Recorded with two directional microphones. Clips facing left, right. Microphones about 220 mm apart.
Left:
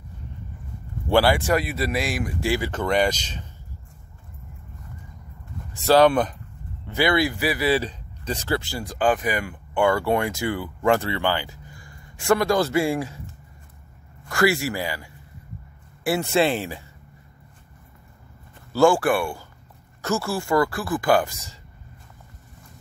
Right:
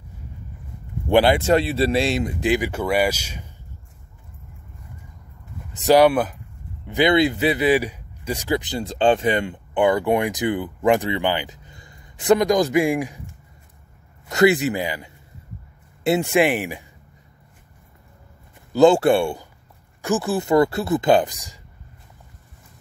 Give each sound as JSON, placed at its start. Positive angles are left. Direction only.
{"t": 1.0, "sound": "speech", "side_deg": -20}
{"t": 5.7, "sound": "speech", "side_deg": -15}
{"t": 6.9, "sound": "speech", "side_deg": -20}
{"t": 14.3, "sound": "speech", "side_deg": -20}
{"t": 18.7, "sound": "speech", "side_deg": -20}